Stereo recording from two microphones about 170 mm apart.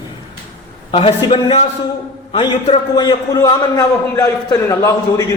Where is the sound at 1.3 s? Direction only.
35° left (ahead or behind); by 4.9 s 20° left (ahead or behind).